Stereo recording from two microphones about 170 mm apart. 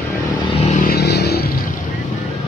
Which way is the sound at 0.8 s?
70° left (ahead or behind).